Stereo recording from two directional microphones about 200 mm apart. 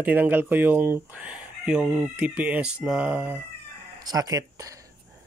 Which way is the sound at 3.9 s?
20° right (ahead or behind).